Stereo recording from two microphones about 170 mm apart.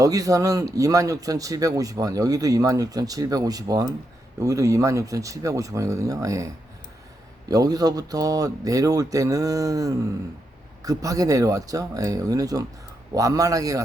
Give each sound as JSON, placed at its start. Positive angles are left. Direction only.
{"t": 0.0, "sound": "speech", "side_deg": -20}